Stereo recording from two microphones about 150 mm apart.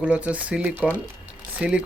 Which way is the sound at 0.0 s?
10° right (ahead or behind).